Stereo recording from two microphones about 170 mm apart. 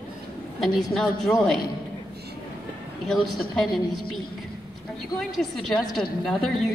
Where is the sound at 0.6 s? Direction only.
Centre (ahead or behind).